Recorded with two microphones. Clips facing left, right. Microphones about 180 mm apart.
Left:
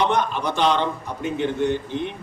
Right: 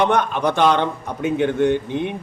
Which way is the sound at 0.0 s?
55° right (ahead or behind).